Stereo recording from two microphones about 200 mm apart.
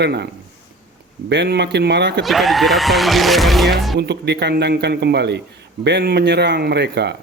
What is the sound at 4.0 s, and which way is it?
Speech, 55° right (ahead or behind).